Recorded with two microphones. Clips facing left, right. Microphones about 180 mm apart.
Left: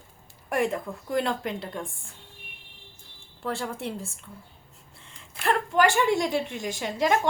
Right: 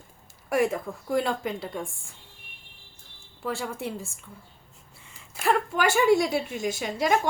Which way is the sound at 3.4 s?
Centre (ahead or behind).